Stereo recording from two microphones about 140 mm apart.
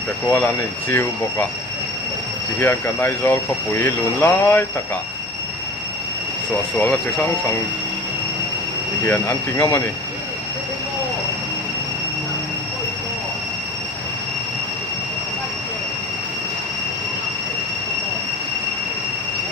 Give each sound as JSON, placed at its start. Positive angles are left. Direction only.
{"t": 0.3, "sound": "speech", "side_deg": 15}
{"t": 2.6, "sound": "speech", "side_deg": 15}
{"t": 6.7, "sound": "speech", "side_deg": 15}
{"t": 9.6, "sound": "speech", "side_deg": 15}